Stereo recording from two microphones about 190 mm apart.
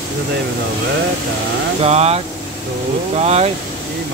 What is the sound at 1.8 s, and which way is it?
Speech, 35° right (ahead or behind).